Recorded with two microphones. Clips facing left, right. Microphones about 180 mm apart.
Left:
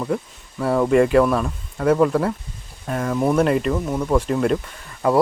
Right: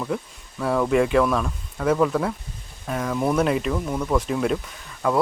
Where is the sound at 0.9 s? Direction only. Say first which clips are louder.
Left 4 dB; centre (ahead or behind).